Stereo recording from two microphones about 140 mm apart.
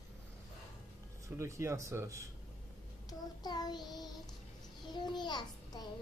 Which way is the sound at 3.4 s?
30° left (ahead or behind).